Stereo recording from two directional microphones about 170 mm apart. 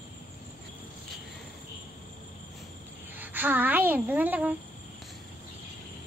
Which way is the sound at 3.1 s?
10° right (ahead or behind).